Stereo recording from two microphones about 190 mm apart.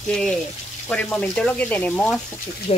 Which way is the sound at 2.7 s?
35° left (ahead or behind).